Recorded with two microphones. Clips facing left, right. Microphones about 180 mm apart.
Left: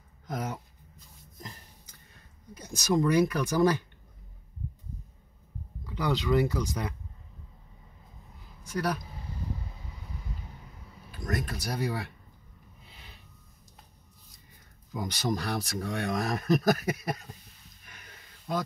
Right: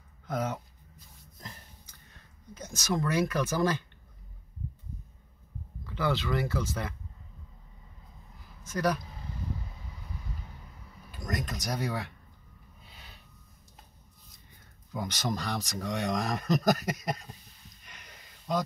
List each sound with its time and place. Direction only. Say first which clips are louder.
2.5 s speech: left 5 dB; 10° left (ahead or behind)
5.9 s speech: left 2 dB; 15° left (ahead or behind)
8.6 s speech: right 2 dB; 10° left (ahead or behind)
11.1 s speech: left 2 dB; 5° left (ahead or behind)
15.0 s speech: left 3 dB; 5° left (ahead or behind)